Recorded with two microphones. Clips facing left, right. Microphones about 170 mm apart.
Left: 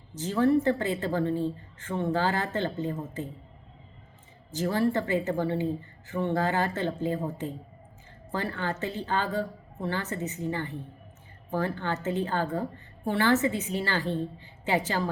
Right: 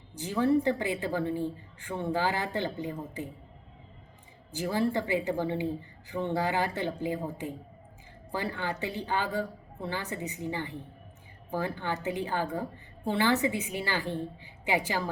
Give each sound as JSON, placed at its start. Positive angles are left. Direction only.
{"t": 0.2, "sound": "a woman's voice", "side_deg": -15}
{"t": 4.5, "sound": "a woman's voice", "side_deg": -10}